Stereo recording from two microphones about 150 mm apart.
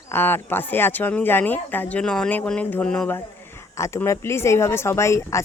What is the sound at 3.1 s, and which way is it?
Speech, 20° left (ahead or behind).